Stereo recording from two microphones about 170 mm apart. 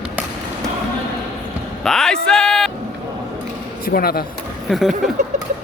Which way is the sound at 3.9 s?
60° left (ahead or behind).